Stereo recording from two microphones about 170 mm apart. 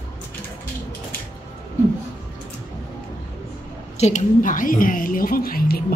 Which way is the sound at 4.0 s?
45° left (ahead or behind).